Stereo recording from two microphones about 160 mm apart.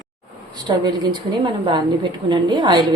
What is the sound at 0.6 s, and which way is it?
A woman's voice, 25° right (ahead or behind).